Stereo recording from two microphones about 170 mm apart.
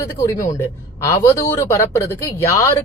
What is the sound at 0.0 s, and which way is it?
A man's voice, 15° left (ahead or behind).